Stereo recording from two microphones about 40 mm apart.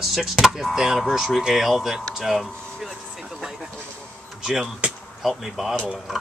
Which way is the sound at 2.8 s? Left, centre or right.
Centre.